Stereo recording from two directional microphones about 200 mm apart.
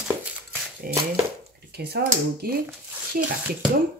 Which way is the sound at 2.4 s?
45° right (ahead or behind).